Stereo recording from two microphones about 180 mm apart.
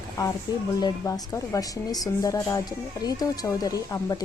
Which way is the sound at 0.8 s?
20° left (ahead or behind).